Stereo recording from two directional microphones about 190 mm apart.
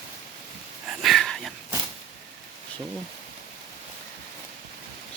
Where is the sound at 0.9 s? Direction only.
Centre (ahead or behind).